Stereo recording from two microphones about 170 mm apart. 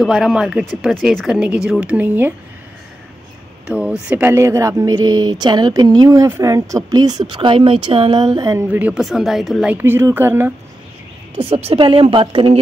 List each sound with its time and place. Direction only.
0.0 s speech: centre (ahead or behind)
3.6 s speech: 5° right (ahead or behind)
8.6 s speech: 10° right (ahead or behind)
11.3 s a woman's voice: 35° right (ahead or behind)